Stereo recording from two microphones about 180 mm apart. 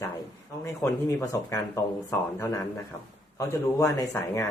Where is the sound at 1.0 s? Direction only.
15° left (ahead or behind).